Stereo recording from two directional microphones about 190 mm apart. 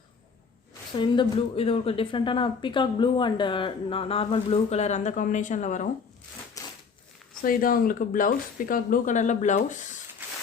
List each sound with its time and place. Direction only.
0.7 s speech: 25° left (ahead or behind); by 5.9 s 40° left (ahead or behind)
6.6 s a sound: 15° left (ahead or behind)
7.4 s speech: 50° left (ahead or behind)